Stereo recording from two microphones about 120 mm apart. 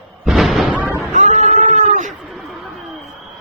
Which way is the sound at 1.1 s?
90° right.